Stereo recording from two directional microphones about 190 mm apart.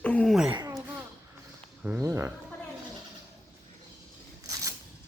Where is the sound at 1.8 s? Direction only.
10° right (ahead or behind).